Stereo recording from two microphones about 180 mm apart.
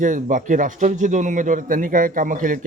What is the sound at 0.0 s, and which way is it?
A man's voice, 45° right (ahead or behind).